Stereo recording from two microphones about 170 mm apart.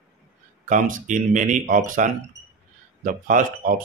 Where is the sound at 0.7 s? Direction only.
50° right (ahead or behind).